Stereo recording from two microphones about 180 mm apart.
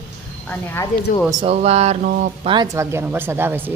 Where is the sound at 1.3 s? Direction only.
30° right (ahead or behind).